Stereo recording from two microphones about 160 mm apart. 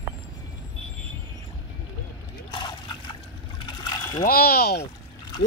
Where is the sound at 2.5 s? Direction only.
30° left (ahead or behind).